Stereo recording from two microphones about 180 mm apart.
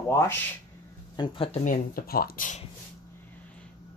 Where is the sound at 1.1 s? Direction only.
25° left (ahead or behind).